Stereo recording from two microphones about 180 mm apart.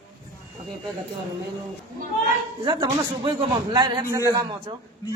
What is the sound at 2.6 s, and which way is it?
A man's voice, 30° right (ahead or behind).